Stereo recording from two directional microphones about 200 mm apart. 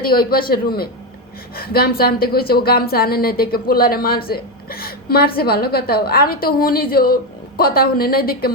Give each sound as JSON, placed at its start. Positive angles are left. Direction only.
{"t": 0.0, "sound": "a woman's voice", "side_deg": 50}